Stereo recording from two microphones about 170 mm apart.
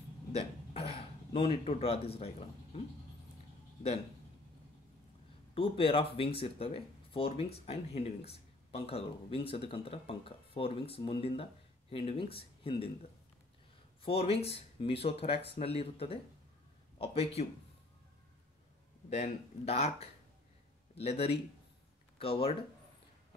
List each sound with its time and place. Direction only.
0.3 s a sound: 35° left (ahead or behind)
5.5 s speech: 30° left (ahead or behind)
14.0 s speech: 35° left (ahead or behind)
19.0 s speech: 40° left (ahead or behind)